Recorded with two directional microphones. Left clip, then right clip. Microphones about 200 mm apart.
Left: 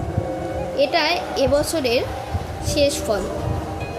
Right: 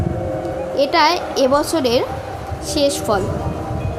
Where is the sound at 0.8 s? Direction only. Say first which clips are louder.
Right 4 dB; 20° right (ahead or behind).